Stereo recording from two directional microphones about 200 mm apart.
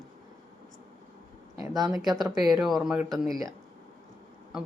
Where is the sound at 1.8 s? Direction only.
Centre (ahead or behind).